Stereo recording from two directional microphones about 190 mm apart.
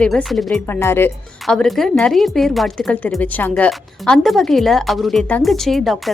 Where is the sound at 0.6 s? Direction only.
10° left (ahead or behind).